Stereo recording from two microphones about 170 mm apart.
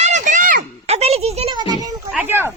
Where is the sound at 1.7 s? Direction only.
20° right (ahead or behind).